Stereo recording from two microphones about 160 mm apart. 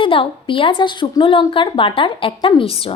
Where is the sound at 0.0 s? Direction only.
35° left (ahead or behind).